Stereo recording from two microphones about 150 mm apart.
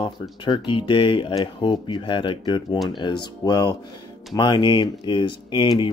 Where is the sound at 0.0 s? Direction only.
30° left (ahead or behind).